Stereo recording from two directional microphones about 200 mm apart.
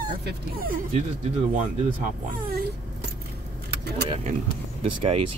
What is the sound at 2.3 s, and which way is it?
Speech, 45° right (ahead or behind).